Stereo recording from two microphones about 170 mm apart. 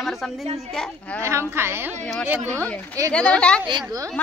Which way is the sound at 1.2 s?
15° right (ahead or behind).